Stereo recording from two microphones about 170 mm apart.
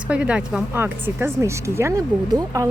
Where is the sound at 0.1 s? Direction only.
5° right (ahead or behind).